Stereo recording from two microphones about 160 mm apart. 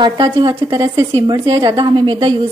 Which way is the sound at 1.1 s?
30° right (ahead or behind).